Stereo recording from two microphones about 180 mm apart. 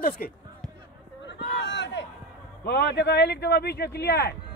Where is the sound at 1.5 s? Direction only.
75° left (ahead or behind).